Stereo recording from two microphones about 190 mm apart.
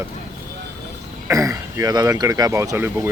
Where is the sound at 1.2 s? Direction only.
15° right (ahead or behind).